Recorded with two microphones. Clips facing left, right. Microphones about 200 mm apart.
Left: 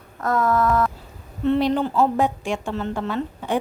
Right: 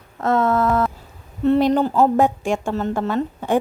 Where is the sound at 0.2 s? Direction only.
25° right (ahead or behind).